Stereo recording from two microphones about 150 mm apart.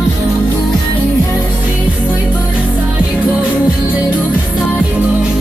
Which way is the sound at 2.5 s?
5° right (ahead or behind).